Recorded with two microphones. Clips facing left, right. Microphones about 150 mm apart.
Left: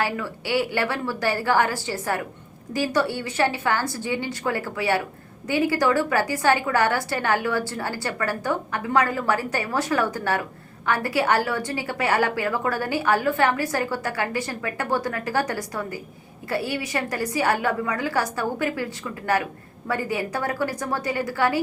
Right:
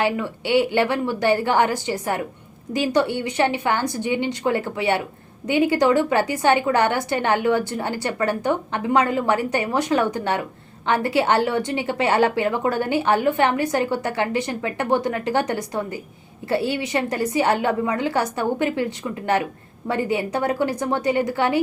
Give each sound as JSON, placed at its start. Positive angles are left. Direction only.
{"t": 0.0, "sound": "a woman's voice", "side_deg": -20}